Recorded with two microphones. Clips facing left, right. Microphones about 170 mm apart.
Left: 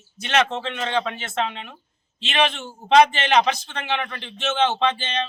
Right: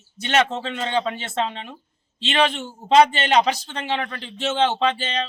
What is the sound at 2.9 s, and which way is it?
Speech, 35° right (ahead or behind).